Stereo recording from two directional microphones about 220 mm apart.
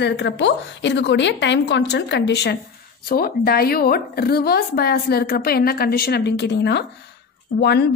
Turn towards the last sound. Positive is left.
turn(degrees=50)  # may be behind; listen again after turning